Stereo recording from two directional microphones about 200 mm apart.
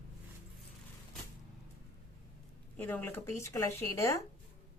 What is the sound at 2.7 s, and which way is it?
A woman's voice, 10° left (ahead or behind).